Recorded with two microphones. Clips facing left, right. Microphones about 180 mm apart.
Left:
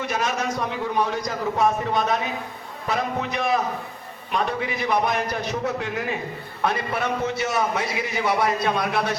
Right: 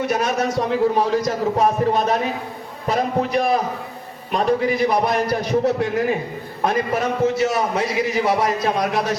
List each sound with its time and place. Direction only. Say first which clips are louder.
0.0 s a man's voice: right 5 dB; 40° right (ahead or behind)